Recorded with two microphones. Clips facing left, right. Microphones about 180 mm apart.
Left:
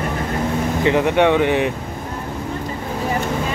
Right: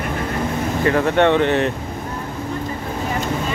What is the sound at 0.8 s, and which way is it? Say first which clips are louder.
Speech: even; 15° left (ahead or behind).